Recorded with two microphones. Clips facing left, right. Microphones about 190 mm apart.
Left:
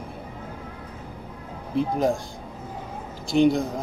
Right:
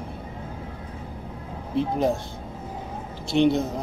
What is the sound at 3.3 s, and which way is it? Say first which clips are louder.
Speech: left 1 dB; centre (ahead or behind).